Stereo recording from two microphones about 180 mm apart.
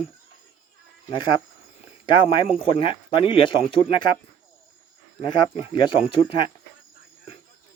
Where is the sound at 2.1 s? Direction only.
25° left (ahead or behind).